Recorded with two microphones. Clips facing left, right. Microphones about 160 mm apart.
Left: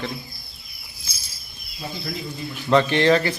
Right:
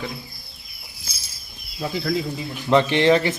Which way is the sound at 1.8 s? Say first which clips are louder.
Right 6 dB; 90° right.